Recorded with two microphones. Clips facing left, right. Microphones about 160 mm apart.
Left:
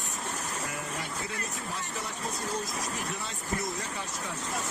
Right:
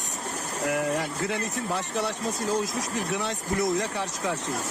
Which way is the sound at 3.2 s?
80° right.